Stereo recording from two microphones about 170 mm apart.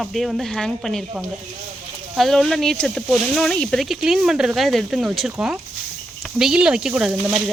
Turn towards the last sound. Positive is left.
turn(degrees=-5)  # may be behind; listen again after turning